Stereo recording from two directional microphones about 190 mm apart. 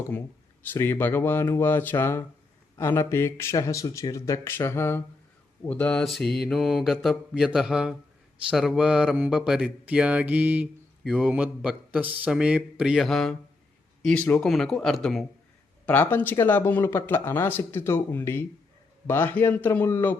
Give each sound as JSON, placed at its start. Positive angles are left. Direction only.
{"t": 0.7, "sound": "speech", "side_deg": 10}